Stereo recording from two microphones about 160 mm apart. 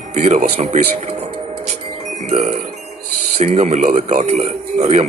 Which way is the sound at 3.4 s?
50° right (ahead or behind).